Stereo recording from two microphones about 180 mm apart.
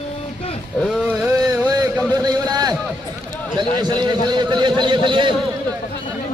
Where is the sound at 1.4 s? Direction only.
15° right (ahead or behind).